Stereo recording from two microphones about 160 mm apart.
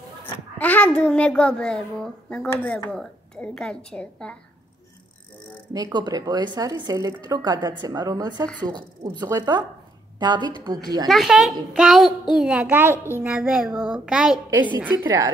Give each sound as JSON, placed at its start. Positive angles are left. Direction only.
{"t": 0.6, "sound": "a child's voice", "side_deg": 10}
{"t": 5.7, "sound": "a woman's voice", "side_deg": -25}
{"t": 11.1, "sound": "a woman's voice", "side_deg": 0}
{"t": 14.8, "sound": "a woman's voice", "side_deg": -20}